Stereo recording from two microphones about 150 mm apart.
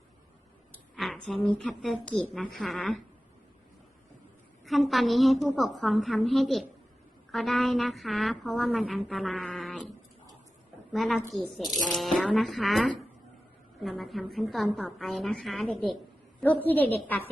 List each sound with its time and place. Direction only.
0.9 s a sound: centre (ahead or behind)
1.5 s a woman's voice: 5° left (ahead or behind)
4.6 s a woman's voice: centre (ahead or behind)
10.9 s a woman's voice: centre (ahead or behind)
16.4 s a woman's voice: 10° left (ahead or behind)